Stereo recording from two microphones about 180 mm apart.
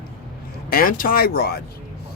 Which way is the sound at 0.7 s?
50° left (ahead or behind).